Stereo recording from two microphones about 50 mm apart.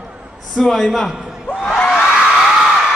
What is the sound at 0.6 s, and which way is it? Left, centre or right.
Speech, centre.